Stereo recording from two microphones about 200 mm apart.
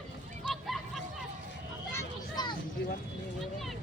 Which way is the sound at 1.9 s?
20° left (ahead or behind).